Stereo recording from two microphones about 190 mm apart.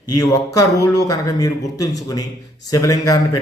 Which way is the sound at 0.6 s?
20° left (ahead or behind).